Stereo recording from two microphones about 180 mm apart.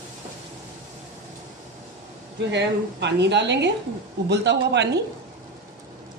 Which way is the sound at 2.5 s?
70° right (ahead or behind).